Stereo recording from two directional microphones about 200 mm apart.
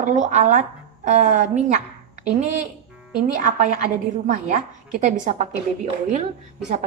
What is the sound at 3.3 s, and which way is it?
Speech, 40° right (ahead or behind).